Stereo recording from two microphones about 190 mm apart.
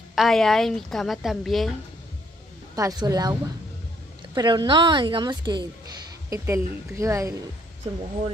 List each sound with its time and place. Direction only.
0.1 s a woman's voice: centre (ahead or behind)
2.7 s a woman's voice: 20° right (ahead or behind)